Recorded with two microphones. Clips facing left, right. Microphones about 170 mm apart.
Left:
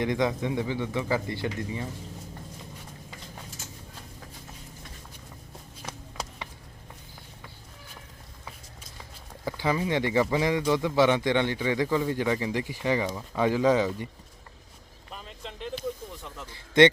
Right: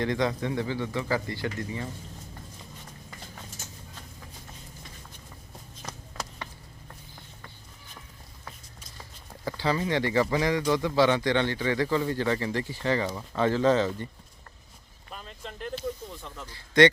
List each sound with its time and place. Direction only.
0.0 s a man's voice: 20° left (ahead or behind)
9.5 s a man's voice: 15° left (ahead or behind)
15.1 s a sound: centre (ahead or behind)
16.5 s a man's voice: 25° left (ahead or behind)